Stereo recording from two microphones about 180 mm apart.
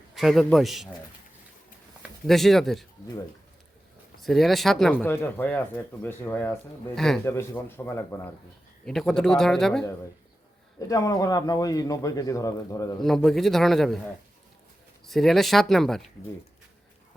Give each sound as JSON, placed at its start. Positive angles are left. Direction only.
{"t": 0.1, "sound": "a man's voice", "side_deg": 0}
{"t": 2.0, "sound": "speech", "side_deg": 0}
{"t": 4.2, "sound": "speech", "side_deg": 0}
{"t": 7.3, "sound": "speech", "side_deg": 15}
{"t": 8.8, "sound": "speech", "side_deg": 5}
{"t": 10.8, "sound": "speech", "side_deg": 20}
{"t": 13.0, "sound": "speech", "side_deg": 0}
{"t": 15.0, "sound": "speech", "side_deg": 0}